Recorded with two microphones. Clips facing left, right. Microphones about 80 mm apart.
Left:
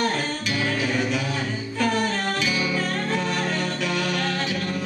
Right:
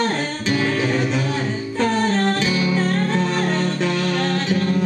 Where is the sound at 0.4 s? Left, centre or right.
Right.